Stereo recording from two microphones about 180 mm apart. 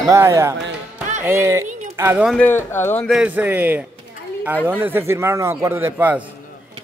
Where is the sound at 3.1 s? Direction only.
5° right (ahead or behind).